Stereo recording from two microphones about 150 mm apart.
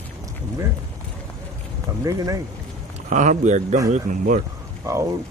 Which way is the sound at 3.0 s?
55° right (ahead or behind).